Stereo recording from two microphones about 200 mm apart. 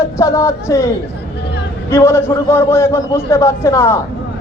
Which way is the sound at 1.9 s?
15° left (ahead or behind).